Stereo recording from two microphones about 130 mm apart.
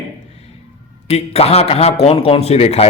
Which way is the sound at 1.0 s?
55° left (ahead or behind).